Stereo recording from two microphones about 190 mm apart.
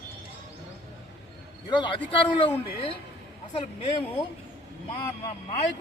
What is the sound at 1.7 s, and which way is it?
Speech, 25° left (ahead or behind).